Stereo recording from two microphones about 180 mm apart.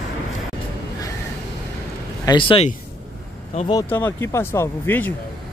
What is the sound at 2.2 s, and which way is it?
Speech, 25° left (ahead or behind).